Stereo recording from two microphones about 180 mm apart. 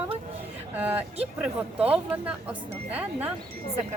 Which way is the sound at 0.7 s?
10° right (ahead or behind).